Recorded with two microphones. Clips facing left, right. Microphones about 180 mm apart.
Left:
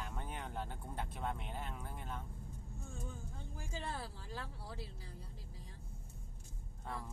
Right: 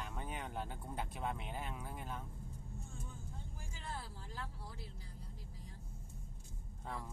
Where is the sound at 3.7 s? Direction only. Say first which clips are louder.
Left 4 dB; 75° left (ahead or behind).